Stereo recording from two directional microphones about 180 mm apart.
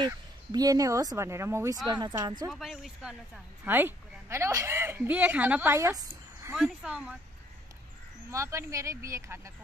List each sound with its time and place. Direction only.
0.0 s speech: 20° right (ahead or behind)
1.9 s a woman's voice: 25° right (ahead or behind)
2.5 s a woman's voice: centre (ahead or behind); by 6.5 s 20° right (ahead or behind)
6.5 s speech: 5° right (ahead or behind)
8.3 s a woman's voice: 15° right (ahead or behind)